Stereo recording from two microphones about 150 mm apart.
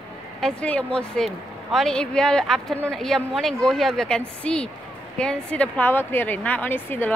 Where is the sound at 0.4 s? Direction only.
5° left (ahead or behind).